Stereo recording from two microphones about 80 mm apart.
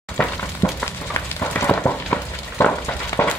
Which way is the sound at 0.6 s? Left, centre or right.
Left.